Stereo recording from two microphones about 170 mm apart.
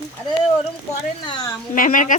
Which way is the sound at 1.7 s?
50° left (ahead or behind).